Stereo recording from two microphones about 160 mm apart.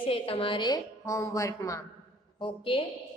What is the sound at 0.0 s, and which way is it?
A woman's voice, 35° left (ahead or behind).